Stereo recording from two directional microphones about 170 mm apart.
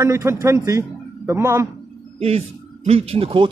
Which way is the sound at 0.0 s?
15° right (ahead or behind).